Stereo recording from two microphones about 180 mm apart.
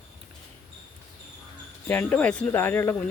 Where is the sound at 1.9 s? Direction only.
10° left (ahead or behind).